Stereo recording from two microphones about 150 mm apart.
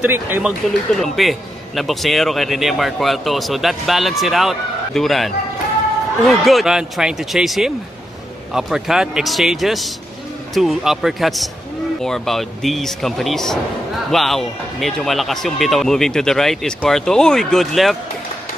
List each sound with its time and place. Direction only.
0.0 s speech: 10° right (ahead or behind)
0.5 s speech: centre (ahead or behind)